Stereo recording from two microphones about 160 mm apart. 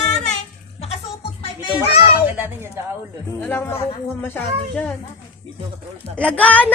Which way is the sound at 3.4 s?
15° left (ahead or behind).